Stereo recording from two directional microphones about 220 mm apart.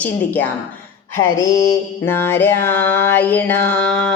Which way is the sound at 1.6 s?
10° left (ahead or behind).